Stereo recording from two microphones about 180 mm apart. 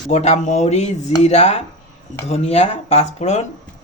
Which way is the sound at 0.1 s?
35° left (ahead or behind).